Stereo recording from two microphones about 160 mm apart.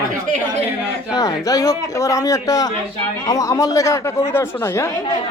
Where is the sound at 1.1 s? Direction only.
25° left (ahead or behind).